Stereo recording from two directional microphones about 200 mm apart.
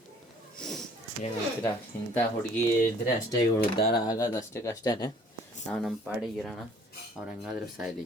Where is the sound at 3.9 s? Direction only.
20° left (ahead or behind).